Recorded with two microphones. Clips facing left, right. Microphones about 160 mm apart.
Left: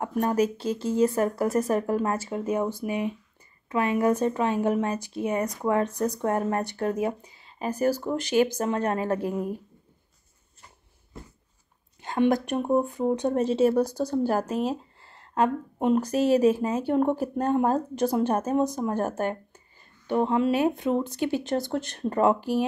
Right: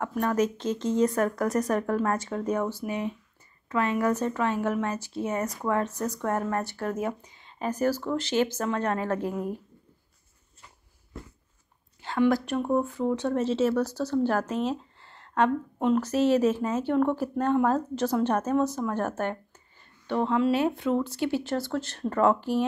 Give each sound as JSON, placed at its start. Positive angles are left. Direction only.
{"t": 0.1, "sound": "speech", "side_deg": 30}
{"t": 0.4, "sound": "speech", "side_deg": 10}
{"t": 1.1, "sound": "speech", "side_deg": 30}
{"t": 1.4, "sound": "speech", "side_deg": 10}
{"t": 12.0, "sound": "speech", "side_deg": 20}
{"t": 15.0, "sound": "a sound", "side_deg": 35}
{"t": 15.4, "sound": "speech", "side_deg": 15}